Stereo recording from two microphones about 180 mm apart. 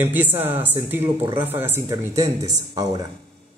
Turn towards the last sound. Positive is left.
turn(degrees=-20)  # may be behind; listen again after turning